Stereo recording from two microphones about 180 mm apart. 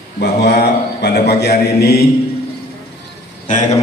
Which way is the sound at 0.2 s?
65° left (ahead or behind).